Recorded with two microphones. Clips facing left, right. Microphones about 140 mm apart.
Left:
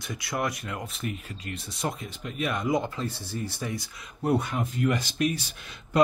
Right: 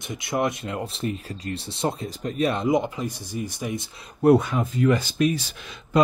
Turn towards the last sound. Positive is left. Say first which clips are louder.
# right 5 dB
turn(degrees=-90)